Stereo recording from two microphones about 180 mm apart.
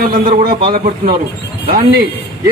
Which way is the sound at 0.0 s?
55° right (ahead or behind).